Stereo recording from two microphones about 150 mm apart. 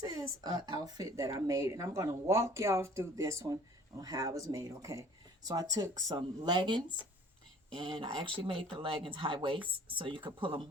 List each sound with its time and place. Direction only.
0.0 s speech: 25° right (ahead or behind)